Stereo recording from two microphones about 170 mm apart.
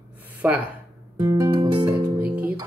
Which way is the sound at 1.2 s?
20° right (ahead or behind).